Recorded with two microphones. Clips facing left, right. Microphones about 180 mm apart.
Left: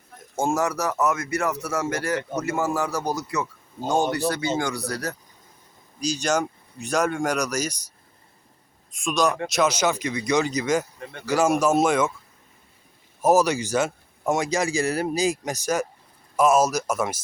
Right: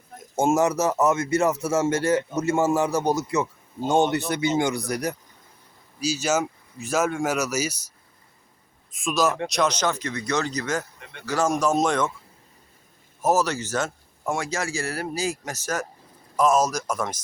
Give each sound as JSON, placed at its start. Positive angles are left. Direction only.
{"t": 0.3, "sound": "speech", "side_deg": -20}
{"t": 6.0, "sound": "speech", "side_deg": -5}
{"t": 8.9, "sound": "speech", "side_deg": 0}
{"t": 13.2, "sound": "speech", "side_deg": 15}